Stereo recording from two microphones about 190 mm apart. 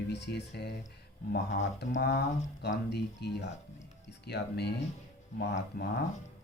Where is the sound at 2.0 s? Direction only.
60° left (ahead or behind).